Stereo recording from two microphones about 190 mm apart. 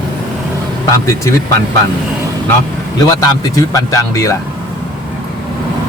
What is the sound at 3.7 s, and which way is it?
Speech, 15° left (ahead or behind).